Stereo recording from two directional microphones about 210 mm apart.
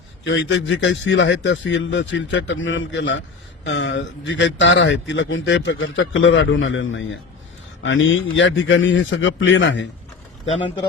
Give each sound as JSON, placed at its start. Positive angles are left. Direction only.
{"t": 0.3, "sound": "a man's voice", "side_deg": 65}